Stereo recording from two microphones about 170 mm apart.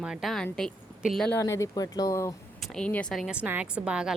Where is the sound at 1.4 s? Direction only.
20° left (ahead or behind).